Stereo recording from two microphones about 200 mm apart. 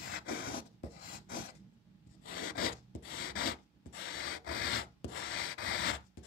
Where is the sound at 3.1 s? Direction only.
85° left.